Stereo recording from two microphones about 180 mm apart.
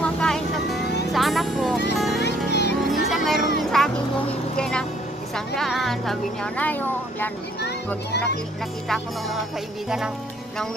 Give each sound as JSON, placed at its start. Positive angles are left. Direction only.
{"t": 0.0, "sound": "music", "side_deg": 5}
{"t": 2.1, "sound": "music", "side_deg": 70}
{"t": 2.9, "sound": "music", "side_deg": 0}
{"t": 4.6, "sound": "vehicle", "side_deg": 5}
{"t": 5.3, "sound": "speech", "side_deg": 0}
{"t": 7.6, "sound": "a child's voice", "side_deg": 70}
{"t": 8.8, "sound": "speech", "side_deg": 0}